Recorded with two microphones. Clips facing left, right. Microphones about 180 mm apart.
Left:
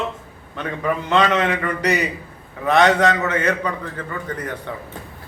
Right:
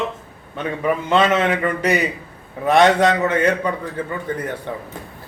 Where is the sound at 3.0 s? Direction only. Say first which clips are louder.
Right 2 dB; 25° right (ahead or behind).